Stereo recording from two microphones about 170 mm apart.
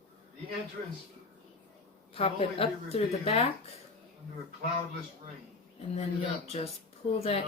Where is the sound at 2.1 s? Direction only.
35° left (ahead or behind).